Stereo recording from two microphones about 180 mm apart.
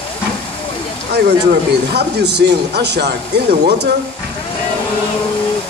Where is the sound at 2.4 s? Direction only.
65° right (ahead or behind).